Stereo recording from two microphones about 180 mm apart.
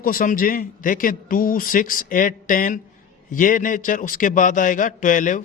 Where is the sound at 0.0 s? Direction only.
50° left (ahead or behind).